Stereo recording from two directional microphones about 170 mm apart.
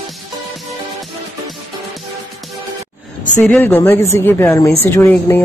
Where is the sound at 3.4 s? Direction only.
10° left (ahead or behind).